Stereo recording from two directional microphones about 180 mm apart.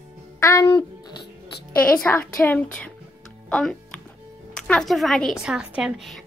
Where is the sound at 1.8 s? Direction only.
10° left (ahead or behind).